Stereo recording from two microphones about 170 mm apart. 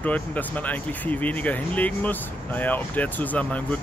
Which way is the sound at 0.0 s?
10° left (ahead or behind).